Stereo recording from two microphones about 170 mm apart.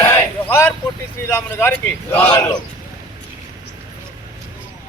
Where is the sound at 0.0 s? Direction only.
15° left (ahead or behind).